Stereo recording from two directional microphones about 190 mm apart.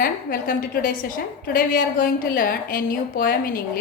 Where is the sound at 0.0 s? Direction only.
50° left (ahead or behind).